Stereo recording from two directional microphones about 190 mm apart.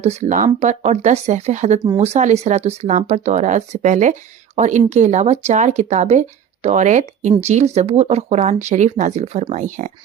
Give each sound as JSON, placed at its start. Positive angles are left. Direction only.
{"t": 0.0, "sound": "speech", "side_deg": -35}